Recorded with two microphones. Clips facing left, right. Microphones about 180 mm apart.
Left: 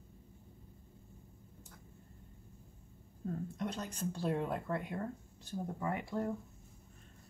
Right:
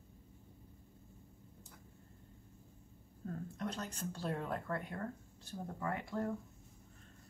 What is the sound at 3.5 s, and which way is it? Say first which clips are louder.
Speech: left 2 dB; 15° left (ahead or behind).